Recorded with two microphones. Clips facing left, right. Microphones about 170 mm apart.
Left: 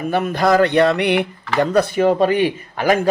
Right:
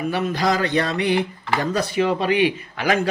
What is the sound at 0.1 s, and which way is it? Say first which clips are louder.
Speech: left 7 dB; 55° left (ahead or behind).